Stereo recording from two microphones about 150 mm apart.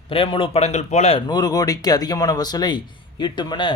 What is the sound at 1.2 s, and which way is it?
Speech, 25° left (ahead or behind).